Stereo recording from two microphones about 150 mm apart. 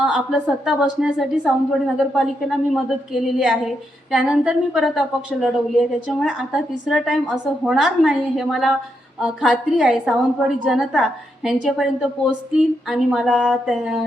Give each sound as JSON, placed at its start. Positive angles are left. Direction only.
{"t": 0.0, "sound": "a woman's voice", "side_deg": -5}